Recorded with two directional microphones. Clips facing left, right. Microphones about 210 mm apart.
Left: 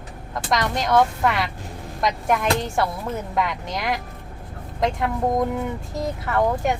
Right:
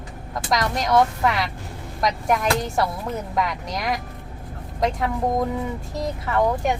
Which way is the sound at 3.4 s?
Centre (ahead or behind).